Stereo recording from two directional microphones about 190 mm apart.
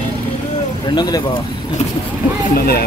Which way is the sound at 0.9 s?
20° left (ahead or behind).